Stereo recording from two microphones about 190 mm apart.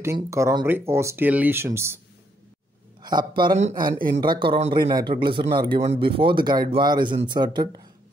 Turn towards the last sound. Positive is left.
turn(degrees=-25)  # may be behind; listen again after turning